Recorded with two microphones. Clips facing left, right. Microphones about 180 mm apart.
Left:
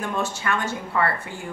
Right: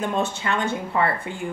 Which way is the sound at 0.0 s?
20° right (ahead or behind).